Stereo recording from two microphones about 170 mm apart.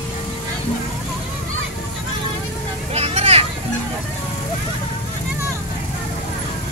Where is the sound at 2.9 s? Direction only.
35° right (ahead or behind).